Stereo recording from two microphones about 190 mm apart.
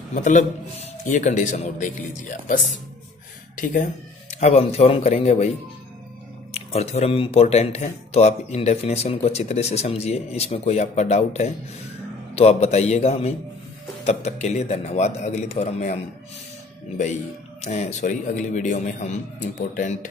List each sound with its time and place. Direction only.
0.1 s speech: 40° left (ahead or behind)
6.5 s speech: 35° left (ahead or behind)
17.6 s speech: 35° left (ahead or behind)